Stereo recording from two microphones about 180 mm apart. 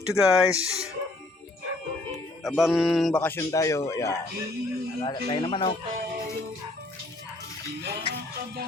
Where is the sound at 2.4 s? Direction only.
Centre (ahead or behind); by 4.2 s 15° left (ahead or behind).